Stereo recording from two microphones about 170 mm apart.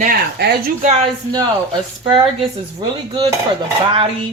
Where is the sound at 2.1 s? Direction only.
30° right (ahead or behind).